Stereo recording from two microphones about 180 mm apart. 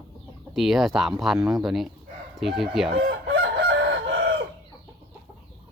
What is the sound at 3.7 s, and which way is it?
Chicken, 75° right (ahead or behind).